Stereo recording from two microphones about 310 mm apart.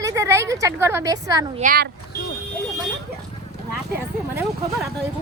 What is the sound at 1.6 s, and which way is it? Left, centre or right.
Speech, right.